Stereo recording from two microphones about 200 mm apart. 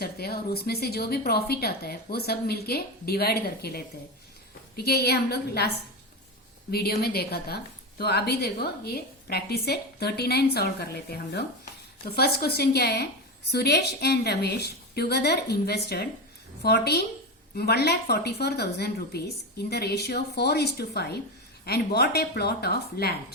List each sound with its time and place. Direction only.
0.0 s a woman's voice: 50° left (ahead or behind)
6.7 s a woman's voice: 50° left (ahead or behind)